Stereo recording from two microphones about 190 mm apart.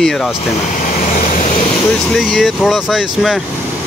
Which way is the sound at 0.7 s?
40° left (ahead or behind).